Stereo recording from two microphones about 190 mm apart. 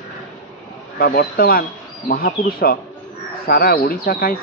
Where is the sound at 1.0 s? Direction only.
55° left (ahead or behind).